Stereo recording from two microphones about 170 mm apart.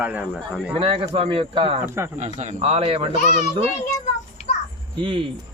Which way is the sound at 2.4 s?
40° right (ahead or behind).